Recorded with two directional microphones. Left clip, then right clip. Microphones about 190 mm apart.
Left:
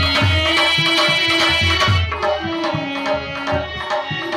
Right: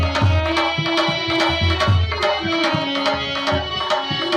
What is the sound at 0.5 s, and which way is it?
Music, 45° right (ahead or behind).